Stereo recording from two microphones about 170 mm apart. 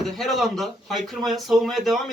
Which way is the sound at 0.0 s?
Centre (ahead or behind).